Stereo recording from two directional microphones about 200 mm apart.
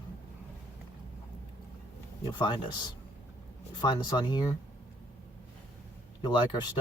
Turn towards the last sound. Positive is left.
turn(degrees=20)  # may be behind; listen again after turning